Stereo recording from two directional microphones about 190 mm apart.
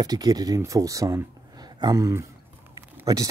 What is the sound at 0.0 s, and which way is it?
Speech, 20° right (ahead or behind).